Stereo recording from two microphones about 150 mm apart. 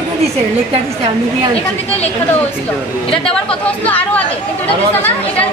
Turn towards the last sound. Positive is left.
turn(degrees=10)  # may be behind; listen again after turning